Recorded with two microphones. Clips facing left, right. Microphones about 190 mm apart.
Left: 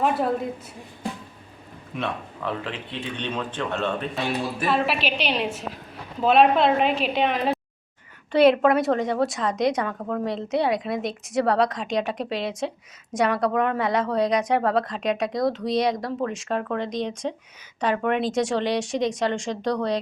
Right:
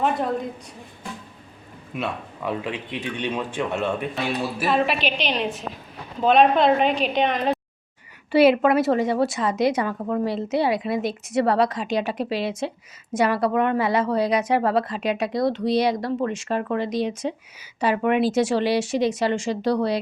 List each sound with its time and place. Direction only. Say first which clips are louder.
0.0 s a woman's voice: even; 5° left (ahead or behind)
2.0 s speech: right 1 dB; 10° right (ahead or behind)
4.6 s a woman's voice: right 2 dB; centre (ahead or behind)